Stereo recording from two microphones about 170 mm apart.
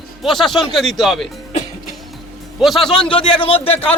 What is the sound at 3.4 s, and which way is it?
Speech, 30° left (ahead or behind).